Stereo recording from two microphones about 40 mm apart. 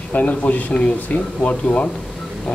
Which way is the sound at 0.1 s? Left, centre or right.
Left.